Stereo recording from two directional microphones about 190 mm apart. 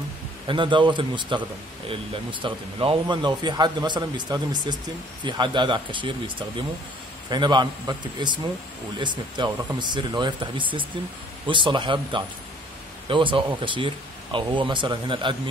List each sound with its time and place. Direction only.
0.5 s speech: 25° right (ahead or behind)